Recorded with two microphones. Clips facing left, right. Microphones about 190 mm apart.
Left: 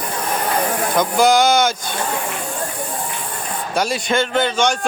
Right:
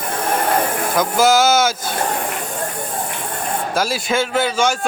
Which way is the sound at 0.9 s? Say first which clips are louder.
Even; 5° right (ahead or behind).